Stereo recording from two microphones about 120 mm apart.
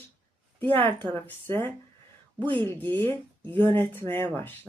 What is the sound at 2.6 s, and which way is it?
Speech, 20° left (ahead or behind).